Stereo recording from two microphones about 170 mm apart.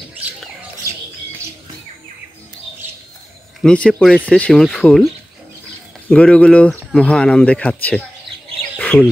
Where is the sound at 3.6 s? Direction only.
5° left (ahead or behind).